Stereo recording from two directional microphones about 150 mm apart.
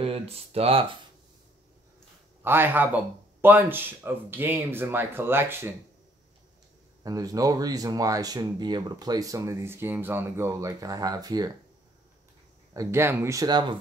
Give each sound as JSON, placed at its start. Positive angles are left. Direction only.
{"t": 0.0, "sound": "speech", "side_deg": -40}
{"t": 2.4, "sound": "speech", "side_deg": -15}
{"t": 7.0, "sound": "speech", "side_deg": -25}
{"t": 12.7, "sound": "speech", "side_deg": -15}